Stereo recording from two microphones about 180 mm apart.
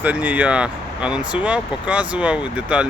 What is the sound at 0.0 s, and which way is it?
Speech, 10° right (ahead or behind).